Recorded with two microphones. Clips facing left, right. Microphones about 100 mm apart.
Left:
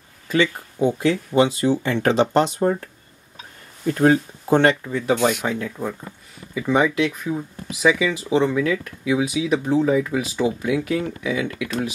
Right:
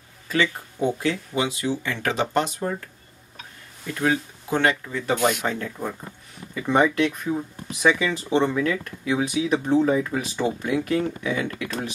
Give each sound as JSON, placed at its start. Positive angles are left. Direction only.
{"t": 0.3, "sound": "speech", "side_deg": 20}
{"t": 1.3, "sound": "speech", "side_deg": 35}
{"t": 2.0, "sound": "speech", "side_deg": 25}
{"t": 4.9, "sound": "speech", "side_deg": 15}
{"t": 5.2, "sound": "speech", "side_deg": 5}